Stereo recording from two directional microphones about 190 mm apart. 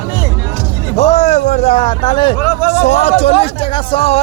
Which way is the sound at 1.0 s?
35° left (ahead or behind).